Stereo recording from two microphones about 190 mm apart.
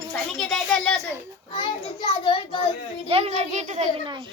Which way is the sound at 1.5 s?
25° left (ahead or behind).